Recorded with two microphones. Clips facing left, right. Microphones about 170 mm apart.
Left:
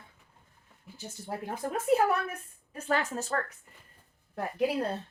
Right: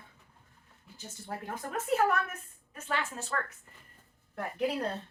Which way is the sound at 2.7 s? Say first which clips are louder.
Left 5 dB; 40° left (ahead or behind).